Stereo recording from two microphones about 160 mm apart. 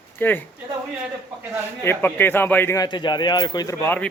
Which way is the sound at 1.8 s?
15° left (ahead or behind).